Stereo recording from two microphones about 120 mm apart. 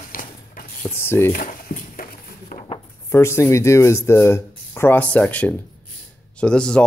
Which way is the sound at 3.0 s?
20° left (ahead or behind).